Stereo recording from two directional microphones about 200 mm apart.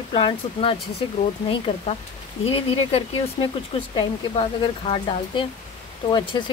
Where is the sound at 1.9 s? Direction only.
35° left (ahead or behind).